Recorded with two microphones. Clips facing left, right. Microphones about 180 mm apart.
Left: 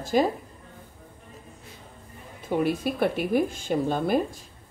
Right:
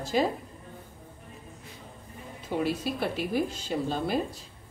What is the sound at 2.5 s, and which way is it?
Speech, 55° left (ahead or behind).